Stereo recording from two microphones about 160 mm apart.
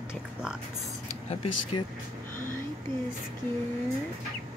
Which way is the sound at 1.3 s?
35° left (ahead or behind).